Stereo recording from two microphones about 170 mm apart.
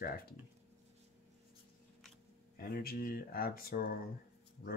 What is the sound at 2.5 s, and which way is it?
Speech, 60° left (ahead or behind).